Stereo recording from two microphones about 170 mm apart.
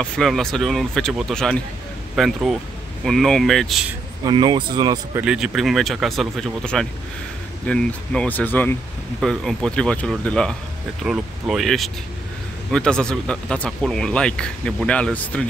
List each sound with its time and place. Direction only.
0.0 s speech: 5° left (ahead or behind)
4.3 s speech: 25° right (ahead or behind)
5.2 s speech: 5° right (ahead or behind)